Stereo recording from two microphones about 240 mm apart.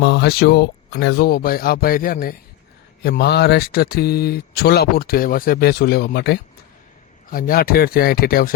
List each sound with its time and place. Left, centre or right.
0.0 s speech: left